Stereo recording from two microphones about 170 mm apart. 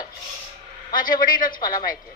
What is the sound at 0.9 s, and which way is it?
Speech, 55° left (ahead or behind).